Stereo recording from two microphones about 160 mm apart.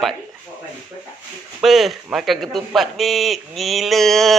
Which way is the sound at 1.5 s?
Centre (ahead or behind).